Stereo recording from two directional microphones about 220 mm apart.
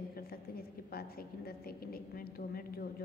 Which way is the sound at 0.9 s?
45° left (ahead or behind).